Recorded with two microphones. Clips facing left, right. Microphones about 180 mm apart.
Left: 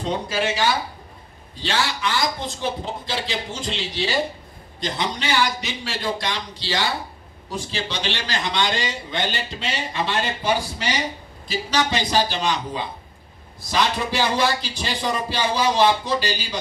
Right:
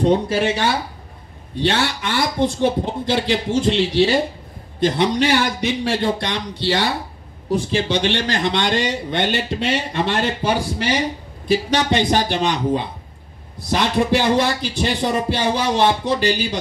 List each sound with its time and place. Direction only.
0.0 s speech: 55° right (ahead or behind)